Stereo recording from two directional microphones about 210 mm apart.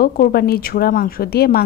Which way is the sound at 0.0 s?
45° left (ahead or behind).